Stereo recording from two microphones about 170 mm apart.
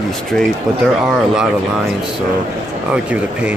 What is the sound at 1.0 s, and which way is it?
Speech, 5° right (ahead or behind).